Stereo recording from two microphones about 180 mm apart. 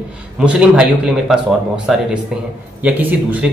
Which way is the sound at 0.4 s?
5° right (ahead or behind).